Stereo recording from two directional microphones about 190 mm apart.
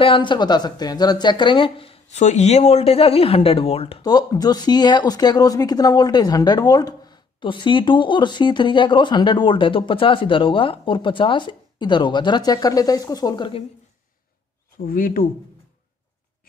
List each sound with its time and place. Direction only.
0.0 s a woman's voice: 25° left (ahead or behind)
14.9 s speech: 50° left (ahead or behind)